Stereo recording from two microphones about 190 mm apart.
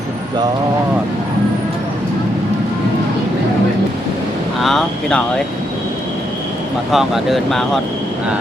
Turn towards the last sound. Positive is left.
turn(degrees=0)  # may be behind; listen again after turning